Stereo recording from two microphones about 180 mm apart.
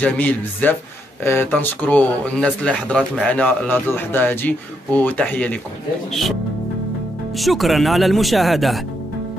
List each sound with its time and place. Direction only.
0.0 s speech: 10° left (ahead or behind)
7.3 s speech: centre (ahead or behind)